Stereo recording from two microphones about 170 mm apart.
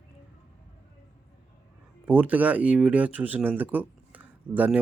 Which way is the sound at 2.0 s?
10° right (ahead or behind).